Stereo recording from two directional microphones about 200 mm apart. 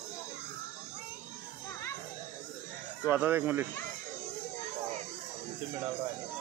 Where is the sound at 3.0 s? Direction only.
10° right (ahead or behind).